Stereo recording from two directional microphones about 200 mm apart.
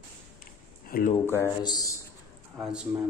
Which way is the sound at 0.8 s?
45° left (ahead or behind).